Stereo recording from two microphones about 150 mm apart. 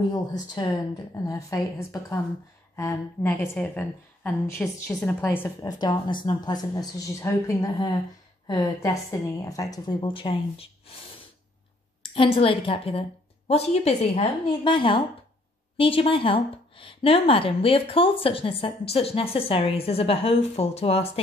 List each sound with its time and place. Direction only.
0.1 s a woman's voice: 25° left (ahead or behind)
5.7 s a woman's voice: 30° left (ahead or behind)
9.4 s a woman's voice: 20° left (ahead or behind)
12.0 s a woman's voice: 35° left (ahead or behind)